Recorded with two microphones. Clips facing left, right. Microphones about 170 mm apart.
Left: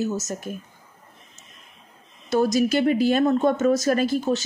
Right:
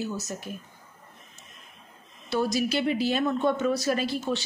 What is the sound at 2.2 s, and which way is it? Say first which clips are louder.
Speech: left 6 dB; 45° left (ahead or behind).